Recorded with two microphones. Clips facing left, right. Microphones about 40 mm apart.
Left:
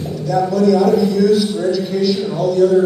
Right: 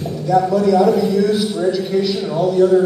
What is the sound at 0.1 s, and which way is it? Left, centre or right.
A man's voice, centre.